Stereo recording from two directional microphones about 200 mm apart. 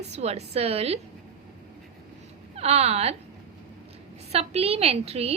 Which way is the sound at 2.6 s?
30° right (ahead or behind).